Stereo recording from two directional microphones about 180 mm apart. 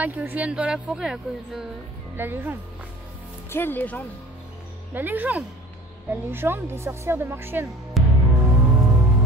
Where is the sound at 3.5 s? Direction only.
10° left (ahead or behind).